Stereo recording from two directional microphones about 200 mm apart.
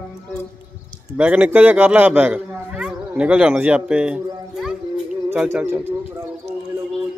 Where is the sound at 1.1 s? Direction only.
5° right (ahead or behind).